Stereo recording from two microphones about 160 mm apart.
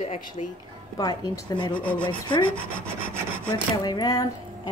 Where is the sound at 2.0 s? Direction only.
30° left (ahead or behind).